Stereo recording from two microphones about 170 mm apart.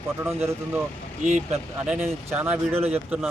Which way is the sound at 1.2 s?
45° right (ahead or behind).